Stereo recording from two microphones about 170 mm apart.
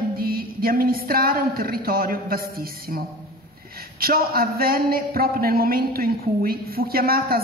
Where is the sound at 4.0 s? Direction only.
60° right (ahead or behind).